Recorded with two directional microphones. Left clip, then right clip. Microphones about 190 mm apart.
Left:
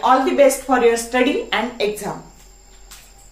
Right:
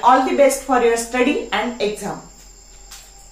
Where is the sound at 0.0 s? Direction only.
15° left (ahead or behind).